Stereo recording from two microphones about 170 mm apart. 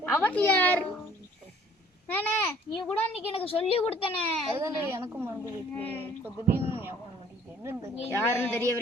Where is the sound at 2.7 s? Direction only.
30° left (ahead or behind).